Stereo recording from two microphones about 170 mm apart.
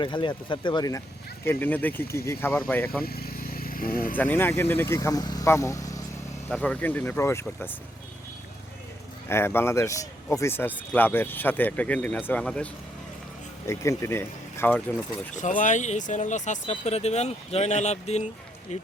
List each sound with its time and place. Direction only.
0.0 s speech: 30° left (ahead or behind)
1.5 s speech: 10° left (ahead or behind)
3.0 s vehicle: 65° left (ahead or behind)
4.1 s speech: 10° left (ahead or behind)
6.5 s speech: 5° left (ahead or behind)
9.3 s speech: 15° left (ahead or behind)
13.7 s speech: 15° left (ahead or behind)
15.4 s speech: 50° left (ahead or behind)